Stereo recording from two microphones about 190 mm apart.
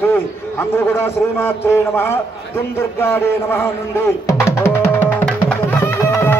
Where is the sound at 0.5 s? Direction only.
10° left (ahead or behind).